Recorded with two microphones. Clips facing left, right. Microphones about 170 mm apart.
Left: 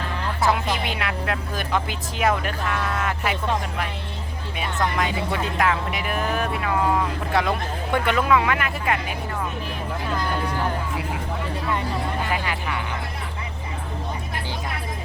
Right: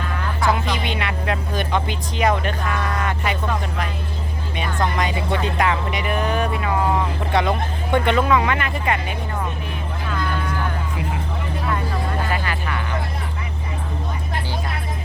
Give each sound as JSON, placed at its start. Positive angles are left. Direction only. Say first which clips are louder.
{"t": 0.4, "sound": "speech", "louder": "right 1 dB", "side_deg": 0}
{"t": 4.5, "sound": "speech", "louder": "right 2 dB", "side_deg": 5}
{"t": 10.2, "sound": "a sound", "louder": "right 2 dB", "side_deg": 35}
{"t": 12.3, "sound": "speech", "louder": "right 1 dB", "side_deg": 15}